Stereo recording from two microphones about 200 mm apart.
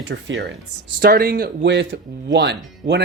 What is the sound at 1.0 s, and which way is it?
Speech, 50° right (ahead or behind).